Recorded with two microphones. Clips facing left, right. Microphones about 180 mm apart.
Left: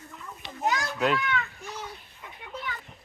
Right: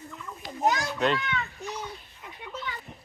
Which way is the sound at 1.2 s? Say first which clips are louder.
Left 2 dB; 25° right (ahead or behind).